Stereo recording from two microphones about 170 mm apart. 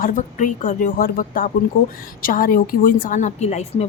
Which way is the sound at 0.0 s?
50° left (ahead or behind).